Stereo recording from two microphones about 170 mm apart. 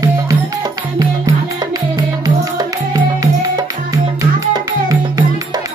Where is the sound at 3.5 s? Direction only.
20° right (ahead or behind).